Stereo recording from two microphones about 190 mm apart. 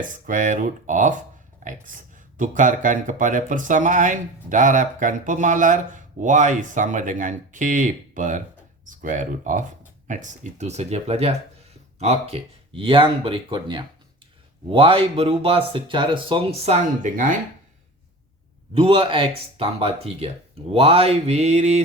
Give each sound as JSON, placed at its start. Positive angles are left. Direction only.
{"t": 0.0, "sound": "speech", "side_deg": -45}
{"t": 18.7, "sound": "speech", "side_deg": -30}